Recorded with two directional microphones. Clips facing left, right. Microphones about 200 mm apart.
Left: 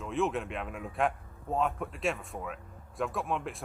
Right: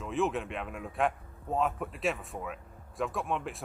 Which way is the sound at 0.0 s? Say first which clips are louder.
Even; centre (ahead or behind).